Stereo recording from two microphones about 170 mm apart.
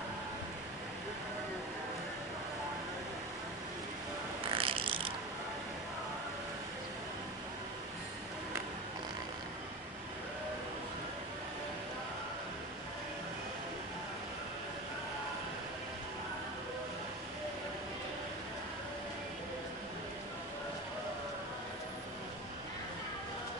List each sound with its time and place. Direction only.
4.6 s mechanisms: 30° right (ahead or behind)